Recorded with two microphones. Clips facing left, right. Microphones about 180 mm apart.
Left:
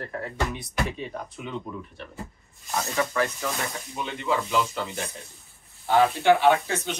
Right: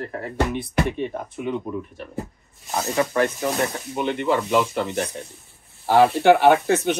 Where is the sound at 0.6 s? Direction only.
60° right (ahead or behind).